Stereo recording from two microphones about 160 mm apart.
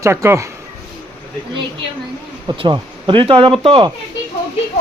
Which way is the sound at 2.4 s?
30° right (ahead or behind).